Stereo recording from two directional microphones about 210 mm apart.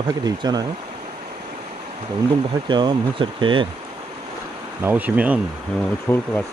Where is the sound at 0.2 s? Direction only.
20° right (ahead or behind).